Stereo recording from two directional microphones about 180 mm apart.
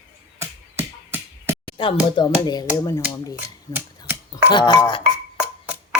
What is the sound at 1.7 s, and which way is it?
Speech, 30° left (ahead or behind).